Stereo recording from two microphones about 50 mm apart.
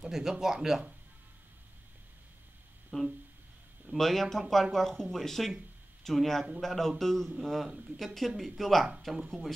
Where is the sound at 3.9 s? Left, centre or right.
Centre.